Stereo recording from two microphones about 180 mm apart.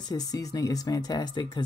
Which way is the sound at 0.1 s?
20° left (ahead or behind).